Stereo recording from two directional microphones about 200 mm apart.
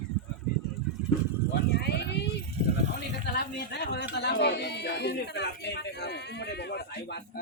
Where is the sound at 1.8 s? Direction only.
55° left (ahead or behind).